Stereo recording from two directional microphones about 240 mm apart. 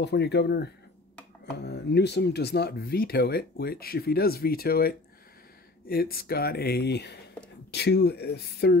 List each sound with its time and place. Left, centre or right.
0.0 s speech: left